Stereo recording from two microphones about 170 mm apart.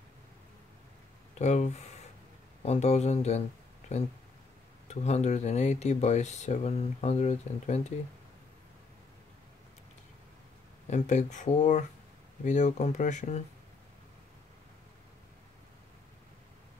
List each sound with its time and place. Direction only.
1.4 s speech: 40° left (ahead or behind)
4.8 s speech: 40° left (ahead or behind)
10.9 s speech: 45° left (ahead or behind)